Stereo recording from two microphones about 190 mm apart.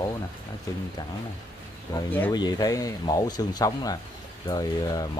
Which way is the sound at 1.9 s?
10° left (ahead or behind).